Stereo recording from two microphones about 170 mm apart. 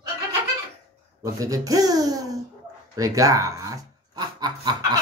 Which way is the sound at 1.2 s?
20° right (ahead or behind).